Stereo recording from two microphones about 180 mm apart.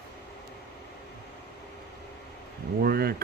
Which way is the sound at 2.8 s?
60° right (ahead or behind).